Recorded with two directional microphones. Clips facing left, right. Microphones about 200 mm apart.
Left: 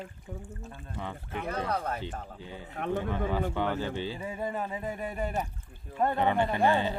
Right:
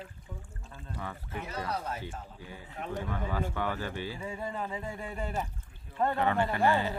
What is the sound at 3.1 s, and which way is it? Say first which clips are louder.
Speech: left 4 dB; 20° left (ahead or behind).